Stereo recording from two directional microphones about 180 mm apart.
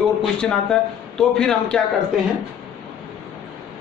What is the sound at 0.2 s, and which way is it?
A man's voice, 5° left (ahead or behind).